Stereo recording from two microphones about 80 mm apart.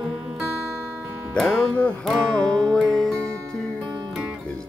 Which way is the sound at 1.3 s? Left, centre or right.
Centre.